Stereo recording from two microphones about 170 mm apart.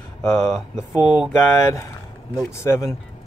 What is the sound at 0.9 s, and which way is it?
Speech, 5° right (ahead or behind).